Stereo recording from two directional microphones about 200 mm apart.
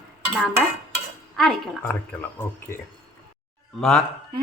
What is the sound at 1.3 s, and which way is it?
Speech, centre (ahead or behind).